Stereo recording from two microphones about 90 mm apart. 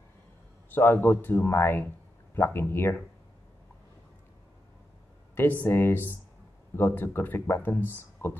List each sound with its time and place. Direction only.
0.7 s speech: 25° left (ahead or behind)
5.3 s speech: 25° left (ahead or behind)